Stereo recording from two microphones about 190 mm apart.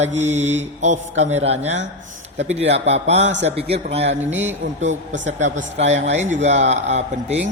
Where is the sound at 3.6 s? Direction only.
30° right (ahead or behind).